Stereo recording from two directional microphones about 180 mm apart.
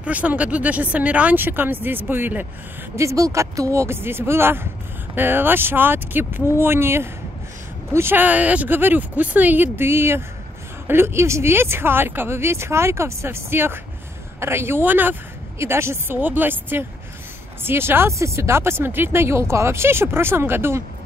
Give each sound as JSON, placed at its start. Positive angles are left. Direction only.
{"t": 0.0, "sound": "speech", "side_deg": -10}